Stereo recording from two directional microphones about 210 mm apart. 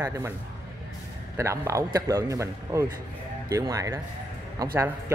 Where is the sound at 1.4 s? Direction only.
15° right (ahead or behind).